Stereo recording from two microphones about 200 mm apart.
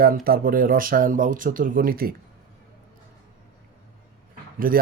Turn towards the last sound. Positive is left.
turn(degrees=-45)  # may be behind; listen again after turning